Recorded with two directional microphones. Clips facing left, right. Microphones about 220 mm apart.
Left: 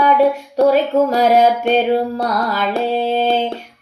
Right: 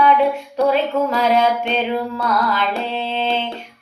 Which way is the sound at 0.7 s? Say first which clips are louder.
Left 4 dB; 40° left (ahead or behind).